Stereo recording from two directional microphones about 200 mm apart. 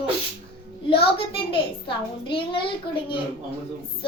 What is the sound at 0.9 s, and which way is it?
A child's voice, 25° left (ahead or behind).